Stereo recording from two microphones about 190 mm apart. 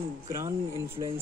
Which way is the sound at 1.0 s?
20° right (ahead or behind).